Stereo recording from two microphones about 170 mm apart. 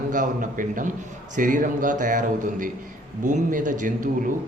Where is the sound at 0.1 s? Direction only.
50° right (ahead or behind).